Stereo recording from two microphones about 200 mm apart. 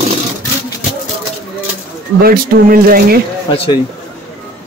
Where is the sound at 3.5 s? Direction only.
30° left (ahead or behind).